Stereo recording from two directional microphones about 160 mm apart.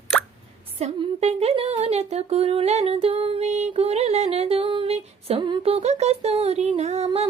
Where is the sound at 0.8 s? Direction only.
40° right (ahead or behind).